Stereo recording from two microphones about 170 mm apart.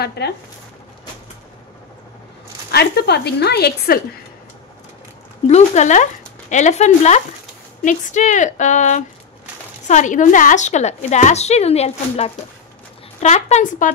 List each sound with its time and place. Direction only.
0.2 s a woman's voice: 75° left (ahead or behind)
2.7 s a woman's voice: 70° left (ahead or behind)
5.5 s a woman's voice: 45° left (ahead or behind)